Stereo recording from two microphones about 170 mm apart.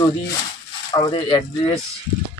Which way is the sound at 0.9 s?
25° left (ahead or behind).